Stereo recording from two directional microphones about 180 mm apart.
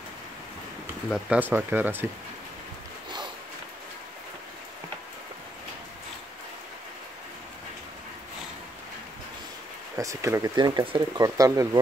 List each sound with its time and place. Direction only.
1.1 s speech: 10° right (ahead or behind)
9.9 s speech: 15° right (ahead or behind)